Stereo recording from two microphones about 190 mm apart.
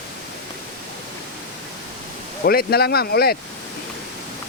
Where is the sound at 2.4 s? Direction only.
55° left (ahead or behind).